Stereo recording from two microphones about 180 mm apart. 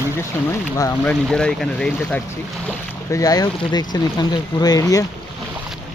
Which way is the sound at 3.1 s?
20° left (ahead or behind).